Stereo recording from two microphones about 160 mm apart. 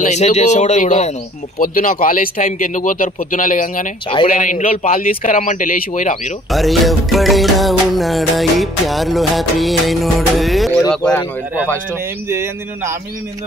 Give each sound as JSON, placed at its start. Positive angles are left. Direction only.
{"t": 0.0, "sound": "a man's voice", "side_deg": 45}
{"t": 1.6, "sound": "speech", "side_deg": 60}
{"t": 6.5, "sound": "music", "side_deg": 0}
{"t": 10.9, "sound": "speech", "side_deg": 10}
{"t": 12.3, "sound": "a man's voice", "side_deg": -15}